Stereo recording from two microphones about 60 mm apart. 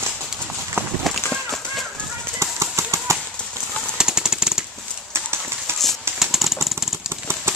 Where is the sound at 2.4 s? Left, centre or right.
Right.